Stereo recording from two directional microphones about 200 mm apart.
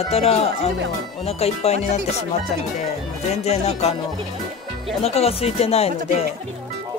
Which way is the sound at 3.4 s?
30° left (ahead or behind).